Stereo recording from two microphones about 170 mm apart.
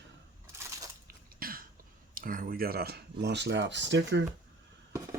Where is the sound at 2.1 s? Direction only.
55° right (ahead or behind); by 4.2 s 90° right.